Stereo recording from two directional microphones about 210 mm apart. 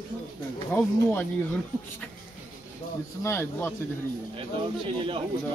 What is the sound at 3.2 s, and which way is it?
Speech, 10° left (ahead or behind).